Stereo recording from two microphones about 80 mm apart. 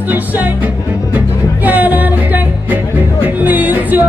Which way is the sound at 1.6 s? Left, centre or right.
Right.